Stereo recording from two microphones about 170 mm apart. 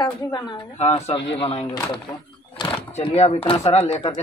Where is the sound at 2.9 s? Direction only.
40° left (ahead or behind).